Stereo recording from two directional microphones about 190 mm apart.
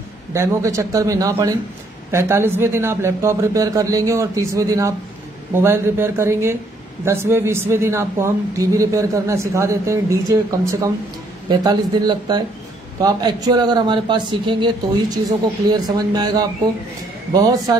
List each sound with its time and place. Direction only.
0.3 s a man's voice: 15° right (ahead or behind)
11.4 s speech: 20° right (ahead or behind)